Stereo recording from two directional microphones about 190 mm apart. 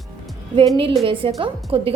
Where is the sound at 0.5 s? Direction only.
30° right (ahead or behind).